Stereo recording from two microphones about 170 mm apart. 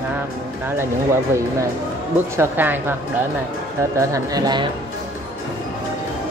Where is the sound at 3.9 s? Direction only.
20° right (ahead or behind).